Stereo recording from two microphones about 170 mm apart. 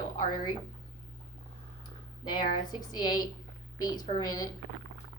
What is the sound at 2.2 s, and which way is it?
Speech, 25° left (ahead or behind).